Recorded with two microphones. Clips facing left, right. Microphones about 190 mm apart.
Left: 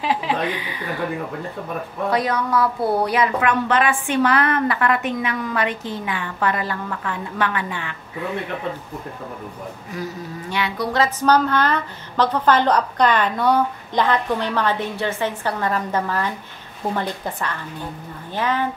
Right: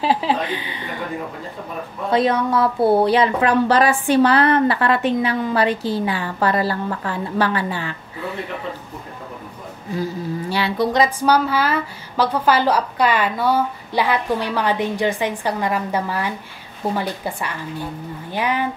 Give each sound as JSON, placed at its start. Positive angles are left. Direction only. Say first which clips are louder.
{"t": 0.0, "sound": "speech", "louder": "right 2 dB", "side_deg": -30}
{"t": 2.0, "sound": "speech", "louder": "right 4 dB", "side_deg": -25}
{"t": 9.8, "sound": "speech", "louder": "right 7 dB", "side_deg": -30}
{"t": 10.9, "sound": "a woman's voice", "louder": "left 1 dB", "side_deg": -15}